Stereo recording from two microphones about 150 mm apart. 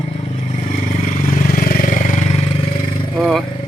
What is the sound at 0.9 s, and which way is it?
Vehicle, 55° left (ahead or behind).